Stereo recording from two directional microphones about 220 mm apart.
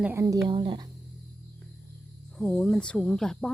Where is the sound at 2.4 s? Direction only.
Centre (ahead or behind).